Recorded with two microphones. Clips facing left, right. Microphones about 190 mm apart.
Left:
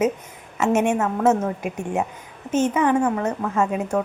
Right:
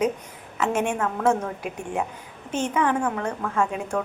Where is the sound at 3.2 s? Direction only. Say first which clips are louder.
Left 3 dB; 25° left (ahead or behind).